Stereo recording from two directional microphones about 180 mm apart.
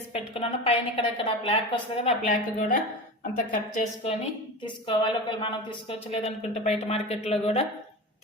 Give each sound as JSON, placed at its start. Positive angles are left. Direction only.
{"t": 0.1, "sound": "a woman's voice", "side_deg": 35}
{"t": 2.0, "sound": "a woman's voice", "side_deg": 45}
{"t": 4.0, "sound": "a woman's voice", "side_deg": 35}